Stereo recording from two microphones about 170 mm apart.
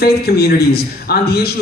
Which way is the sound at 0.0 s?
70° left (ahead or behind).